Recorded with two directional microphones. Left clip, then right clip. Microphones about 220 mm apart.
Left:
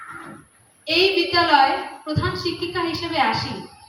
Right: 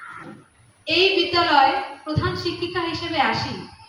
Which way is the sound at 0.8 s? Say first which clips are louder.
Even; 25° left (ahead or behind).